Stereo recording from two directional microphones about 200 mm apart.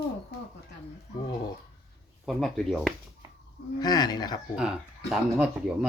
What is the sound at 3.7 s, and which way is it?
Speech, 20° left (ahead or behind).